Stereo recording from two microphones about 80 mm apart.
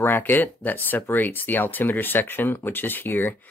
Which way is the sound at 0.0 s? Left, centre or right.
Left.